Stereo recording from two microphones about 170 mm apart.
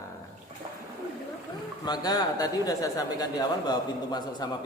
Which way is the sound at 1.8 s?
25° left (ahead or behind).